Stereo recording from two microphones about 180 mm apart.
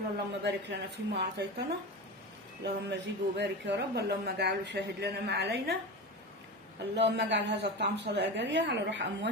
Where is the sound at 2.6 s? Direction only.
70° right (ahead or behind).